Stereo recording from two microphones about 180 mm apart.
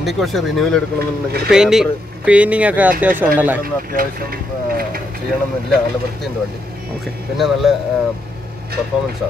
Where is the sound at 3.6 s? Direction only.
55° right (ahead or behind).